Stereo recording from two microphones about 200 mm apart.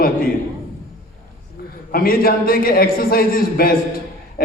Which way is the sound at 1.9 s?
45° left (ahead or behind).